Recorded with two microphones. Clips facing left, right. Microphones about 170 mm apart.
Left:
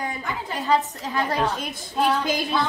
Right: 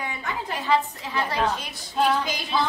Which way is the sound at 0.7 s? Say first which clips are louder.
Left 1 dB; 45° left (ahead or behind).